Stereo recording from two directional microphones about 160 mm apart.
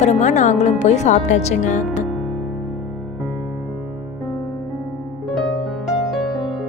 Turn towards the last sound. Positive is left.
turn(degrees=0)  # may be behind; listen again after turning